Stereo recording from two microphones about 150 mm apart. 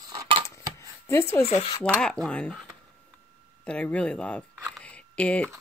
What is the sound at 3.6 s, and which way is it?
Speech, 5° left (ahead or behind).